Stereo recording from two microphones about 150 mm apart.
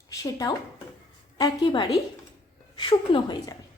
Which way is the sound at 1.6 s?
25° left (ahead or behind).